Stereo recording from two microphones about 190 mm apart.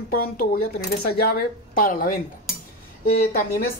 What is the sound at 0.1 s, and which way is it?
A woman's voice, 50° left (ahead or behind).